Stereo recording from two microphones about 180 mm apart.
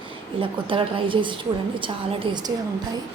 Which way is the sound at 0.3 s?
30° right (ahead or behind).